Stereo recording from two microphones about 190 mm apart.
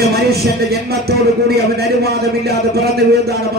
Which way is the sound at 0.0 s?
55° right (ahead or behind).